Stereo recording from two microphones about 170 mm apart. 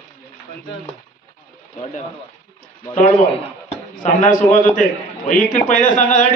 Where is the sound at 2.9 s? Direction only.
45° left (ahead or behind).